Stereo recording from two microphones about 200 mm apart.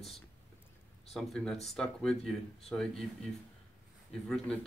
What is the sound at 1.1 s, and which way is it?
Speech, centre (ahead or behind).